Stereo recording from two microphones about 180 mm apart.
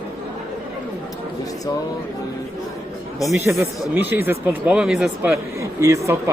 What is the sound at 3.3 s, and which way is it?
Speech, 10° right (ahead or behind).